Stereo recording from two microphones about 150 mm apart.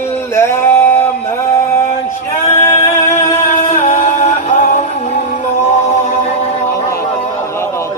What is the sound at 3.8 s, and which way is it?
Music, 50° left (ahead or behind).